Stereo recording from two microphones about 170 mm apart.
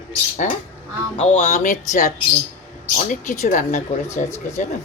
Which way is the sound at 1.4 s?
50° left (ahead or behind).